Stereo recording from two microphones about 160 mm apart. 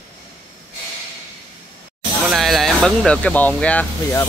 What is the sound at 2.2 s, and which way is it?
Speech, centre (ahead or behind).